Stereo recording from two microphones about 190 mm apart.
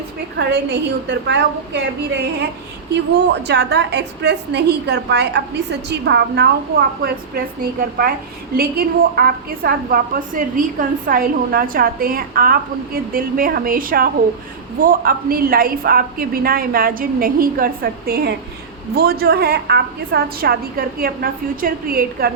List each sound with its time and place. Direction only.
0.3 s a woman's voice: 65° right (ahead or behind)
3.4 s a woman's voice: 65° right (ahead or behind)
7.0 s a woman's voice: 50° right (ahead or behind)